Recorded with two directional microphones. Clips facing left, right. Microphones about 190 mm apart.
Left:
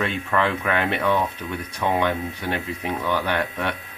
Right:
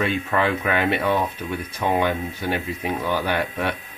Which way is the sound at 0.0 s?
5° right (ahead or behind).